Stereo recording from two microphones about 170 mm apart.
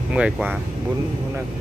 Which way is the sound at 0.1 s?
5° right (ahead or behind).